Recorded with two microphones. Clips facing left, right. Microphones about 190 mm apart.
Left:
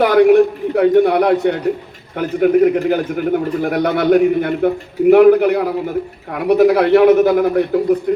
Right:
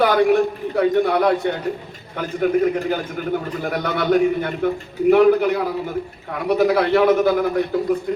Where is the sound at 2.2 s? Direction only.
60° left (ahead or behind).